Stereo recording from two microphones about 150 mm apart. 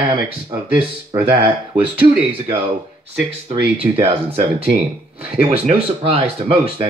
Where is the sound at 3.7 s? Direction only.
35° right (ahead or behind).